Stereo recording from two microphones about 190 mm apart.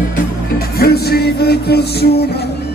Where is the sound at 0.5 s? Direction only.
55° left (ahead or behind).